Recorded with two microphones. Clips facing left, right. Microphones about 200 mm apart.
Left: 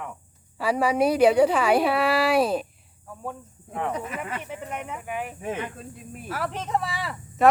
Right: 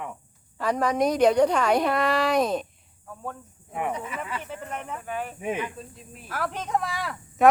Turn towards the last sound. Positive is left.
turn(degrees=5)  # may be behind; listen again after turning